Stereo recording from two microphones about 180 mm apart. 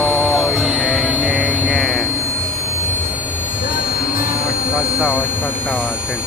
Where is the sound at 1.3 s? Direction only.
Centre (ahead or behind).